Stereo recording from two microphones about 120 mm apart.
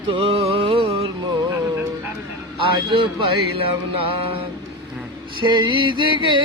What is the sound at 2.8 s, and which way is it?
Music, 45° right (ahead or behind).